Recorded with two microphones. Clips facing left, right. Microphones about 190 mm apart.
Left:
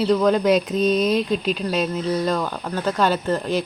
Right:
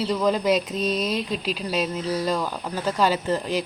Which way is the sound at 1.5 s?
5° right (ahead or behind).